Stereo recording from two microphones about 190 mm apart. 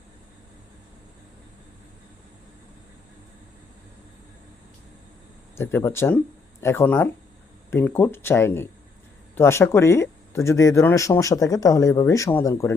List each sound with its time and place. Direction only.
5.5 s speech: 10° left (ahead or behind)